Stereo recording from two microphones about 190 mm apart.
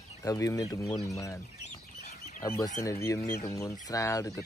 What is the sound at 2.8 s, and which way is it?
Speech, 15° left (ahead or behind).